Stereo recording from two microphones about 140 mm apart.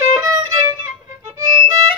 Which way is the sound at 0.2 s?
25° right (ahead or behind).